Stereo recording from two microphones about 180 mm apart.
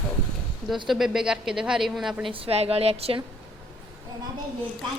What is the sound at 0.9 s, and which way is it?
Speech, centre (ahead or behind).